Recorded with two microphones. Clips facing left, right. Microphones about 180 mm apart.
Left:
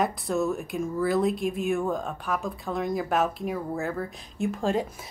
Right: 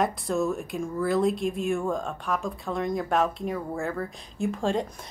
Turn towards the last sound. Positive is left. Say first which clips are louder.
# even
turn(degrees=0)  # may be behind; listen again after turning